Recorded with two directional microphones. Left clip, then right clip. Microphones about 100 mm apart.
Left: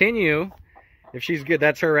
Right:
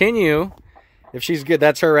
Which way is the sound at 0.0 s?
50° right (ahead or behind).